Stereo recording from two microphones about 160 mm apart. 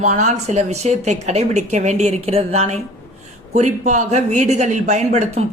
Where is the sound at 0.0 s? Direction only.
45° right (ahead or behind).